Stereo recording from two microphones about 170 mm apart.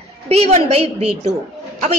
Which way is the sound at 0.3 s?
40° right (ahead or behind).